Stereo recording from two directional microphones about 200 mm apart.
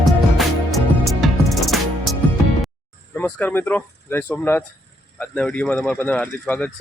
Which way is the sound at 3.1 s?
10° left (ahead or behind).